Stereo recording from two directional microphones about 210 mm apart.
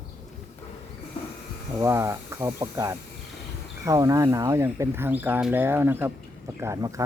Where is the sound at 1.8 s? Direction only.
15° right (ahead or behind).